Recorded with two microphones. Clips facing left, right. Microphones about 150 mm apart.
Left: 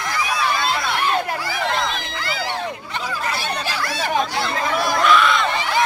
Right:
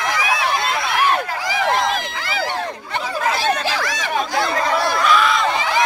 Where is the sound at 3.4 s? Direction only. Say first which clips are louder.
Right 5 dB; 90° right.